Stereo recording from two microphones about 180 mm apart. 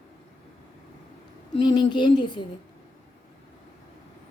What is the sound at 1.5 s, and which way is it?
Speech, 25° left (ahead or behind).